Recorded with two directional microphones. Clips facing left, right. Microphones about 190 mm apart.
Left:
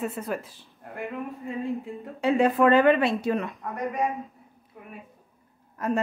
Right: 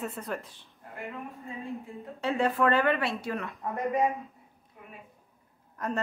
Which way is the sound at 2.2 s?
15° left (ahead or behind).